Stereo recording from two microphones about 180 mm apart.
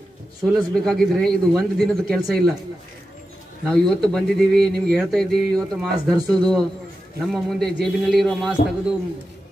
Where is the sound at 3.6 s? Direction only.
Centre (ahead or behind).